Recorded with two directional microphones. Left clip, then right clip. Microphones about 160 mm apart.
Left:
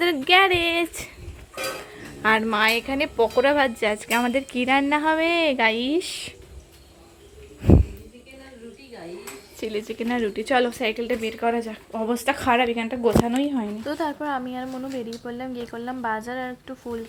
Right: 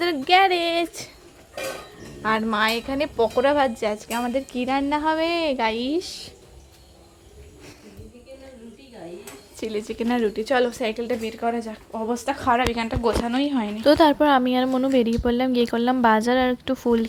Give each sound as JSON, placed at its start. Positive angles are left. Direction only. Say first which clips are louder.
{"t": 0.0, "sound": "speech", "louder": "even", "side_deg": 0}
{"t": 2.2, "sound": "speech", "louder": "left 2 dB", "side_deg": 0}
{"t": 9.6, "sound": "speech", "louder": "right 1 dB", "side_deg": -10}
{"t": 13.6, "sound": "speech", "louder": "right 2 dB", "side_deg": 0}
{"t": 13.8, "sound": "a woman's voice", "louder": "right 14 dB", "side_deg": -45}